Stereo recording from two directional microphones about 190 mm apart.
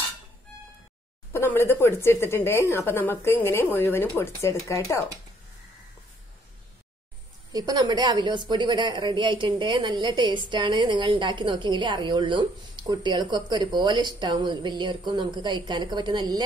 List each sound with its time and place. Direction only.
1.3 s speech: 10° left (ahead or behind)
7.5 s a woman's voice: 20° right (ahead or behind)